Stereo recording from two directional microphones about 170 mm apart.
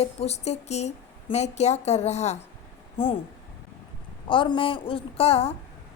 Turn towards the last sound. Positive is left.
turn(degrees=35)  # may be behind; listen again after turning